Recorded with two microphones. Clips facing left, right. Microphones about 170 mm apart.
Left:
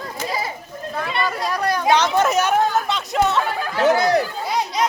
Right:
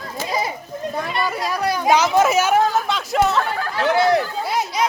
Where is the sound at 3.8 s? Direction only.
40° left (ahead or behind).